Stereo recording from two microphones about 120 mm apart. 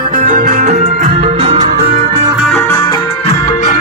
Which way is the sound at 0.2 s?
90° right.